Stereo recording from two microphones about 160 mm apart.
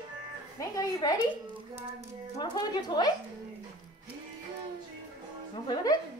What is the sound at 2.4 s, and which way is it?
Speech, 25° left (ahead or behind).